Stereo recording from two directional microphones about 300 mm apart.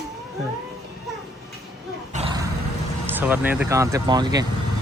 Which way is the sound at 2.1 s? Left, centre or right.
Centre.